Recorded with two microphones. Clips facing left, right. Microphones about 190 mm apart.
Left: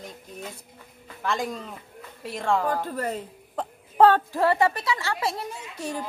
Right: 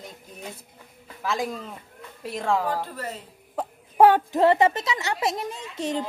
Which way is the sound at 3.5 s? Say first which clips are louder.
Right 2 dB; 10° right (ahead or behind).